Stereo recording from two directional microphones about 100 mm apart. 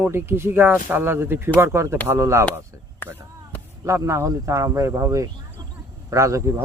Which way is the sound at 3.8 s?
30° right (ahead or behind).